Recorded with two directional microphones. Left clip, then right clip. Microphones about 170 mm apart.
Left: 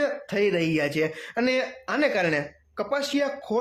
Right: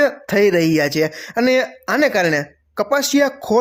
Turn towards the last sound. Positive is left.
turn(degrees=-50)  # may be behind; listen again after turning